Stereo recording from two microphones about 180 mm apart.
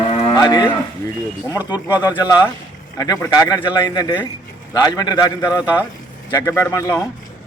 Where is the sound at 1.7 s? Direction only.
20° left (ahead or behind).